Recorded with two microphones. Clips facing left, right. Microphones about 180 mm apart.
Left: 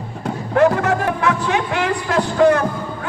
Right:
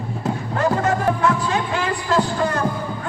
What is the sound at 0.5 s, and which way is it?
Music, 65° left (ahead or behind).